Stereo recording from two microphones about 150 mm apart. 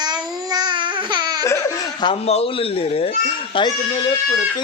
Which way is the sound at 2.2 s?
40° left (ahead or behind).